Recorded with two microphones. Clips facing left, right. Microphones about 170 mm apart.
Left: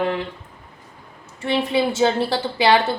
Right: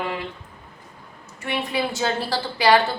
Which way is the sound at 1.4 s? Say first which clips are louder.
Left 5 dB; 30° left (ahead or behind).